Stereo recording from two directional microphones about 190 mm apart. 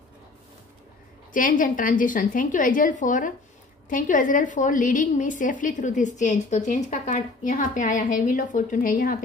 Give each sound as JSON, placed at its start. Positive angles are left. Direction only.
{"t": 1.3, "sound": "a woman's voice", "side_deg": 45}